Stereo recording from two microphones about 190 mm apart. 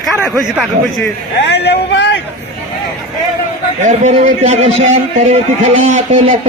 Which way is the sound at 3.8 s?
40° right (ahead or behind).